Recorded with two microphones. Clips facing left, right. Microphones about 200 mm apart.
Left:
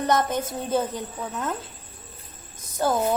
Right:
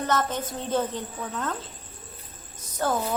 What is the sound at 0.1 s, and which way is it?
A woman's voice, 15° left (ahead or behind).